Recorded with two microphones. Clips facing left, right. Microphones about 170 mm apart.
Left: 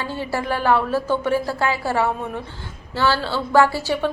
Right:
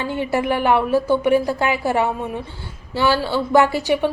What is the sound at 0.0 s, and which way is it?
A woman's voice, 20° right (ahead or behind).